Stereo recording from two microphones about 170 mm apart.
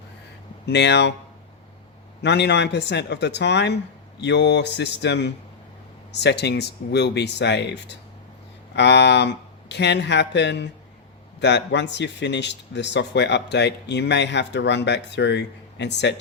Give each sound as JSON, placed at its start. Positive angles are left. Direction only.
{"t": 0.6, "sound": "a man's voice", "side_deg": 90}
{"t": 2.2, "sound": "a man's voice", "side_deg": 90}